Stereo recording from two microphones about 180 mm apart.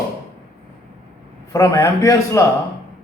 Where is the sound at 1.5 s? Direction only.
15° left (ahead or behind).